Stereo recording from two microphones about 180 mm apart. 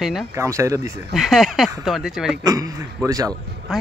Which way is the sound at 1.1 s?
Centre (ahead or behind).